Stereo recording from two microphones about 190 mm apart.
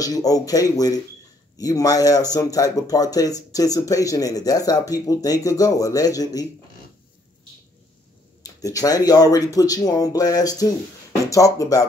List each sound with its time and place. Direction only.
0.0 s speech: 20° left (ahead or behind)
8.4 s speech: 20° left (ahead or behind)